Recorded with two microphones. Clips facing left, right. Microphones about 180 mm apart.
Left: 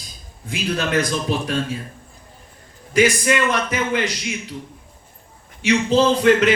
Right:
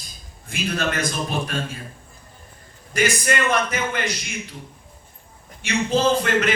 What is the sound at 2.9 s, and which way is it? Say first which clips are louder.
A man's voice: left 5 dB; 50° right (ahead or behind).